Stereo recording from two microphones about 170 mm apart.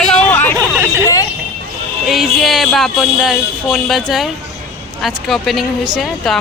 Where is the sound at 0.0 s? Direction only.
5° left (ahead or behind).